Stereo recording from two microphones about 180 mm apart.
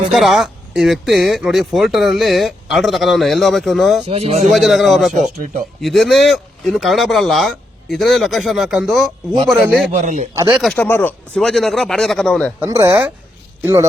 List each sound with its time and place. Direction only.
0.1 s speech: centre (ahead or behind)
4.0 s speech: 35° right (ahead or behind)
4.5 s speech: centre (ahead or behind)
9.9 s a man's voice: 40° right (ahead or behind)
10.5 s speech: centre (ahead or behind)
11.3 s speech: centre (ahead or behind)
12.5 s a man's voice: 15° right (ahead or behind)